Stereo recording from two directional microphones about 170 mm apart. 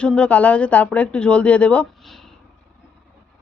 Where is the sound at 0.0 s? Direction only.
5° left (ahead or behind).